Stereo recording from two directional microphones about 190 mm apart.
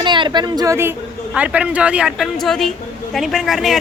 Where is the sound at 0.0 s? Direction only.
25° right (ahead or behind).